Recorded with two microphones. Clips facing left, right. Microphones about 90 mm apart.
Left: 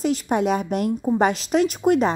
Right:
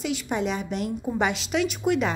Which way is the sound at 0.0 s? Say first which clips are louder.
Left 6 dB; 45° left (ahead or behind).